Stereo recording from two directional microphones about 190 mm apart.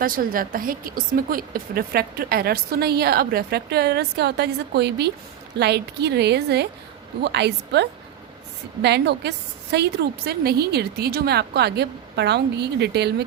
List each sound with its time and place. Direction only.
0.0 s a woman's voice: 50° right (ahead or behind)